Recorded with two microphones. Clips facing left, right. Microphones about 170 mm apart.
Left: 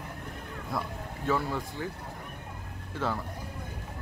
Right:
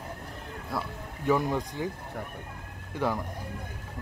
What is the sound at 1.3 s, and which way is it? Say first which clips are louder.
Speech: right 4 dB; 15° right (ahead or behind).